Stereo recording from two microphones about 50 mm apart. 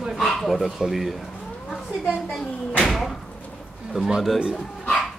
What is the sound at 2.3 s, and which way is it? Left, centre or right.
Speech, centre.